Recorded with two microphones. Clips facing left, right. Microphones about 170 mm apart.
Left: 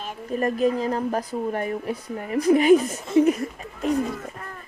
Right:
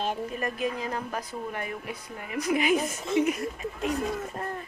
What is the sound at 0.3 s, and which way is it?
A woman's voice, 35° left (ahead or behind).